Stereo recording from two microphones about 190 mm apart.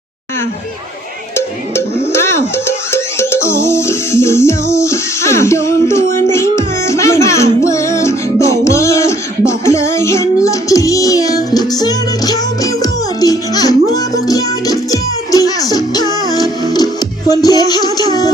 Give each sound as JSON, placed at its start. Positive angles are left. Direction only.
{"t": 2.1, "sound": "music", "side_deg": 15}